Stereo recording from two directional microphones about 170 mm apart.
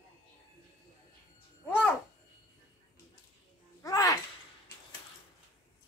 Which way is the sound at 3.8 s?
20° left (ahead or behind).